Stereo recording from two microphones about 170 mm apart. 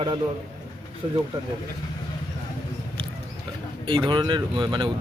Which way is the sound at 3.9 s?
30° right (ahead or behind).